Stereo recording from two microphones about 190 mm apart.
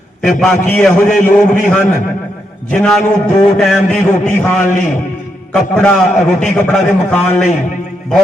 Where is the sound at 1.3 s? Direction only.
45° left (ahead or behind).